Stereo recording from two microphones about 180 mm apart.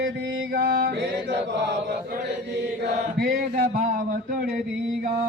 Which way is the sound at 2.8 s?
55° right (ahead or behind).